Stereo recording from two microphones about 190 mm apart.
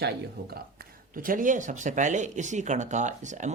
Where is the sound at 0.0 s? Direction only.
55° right (ahead or behind).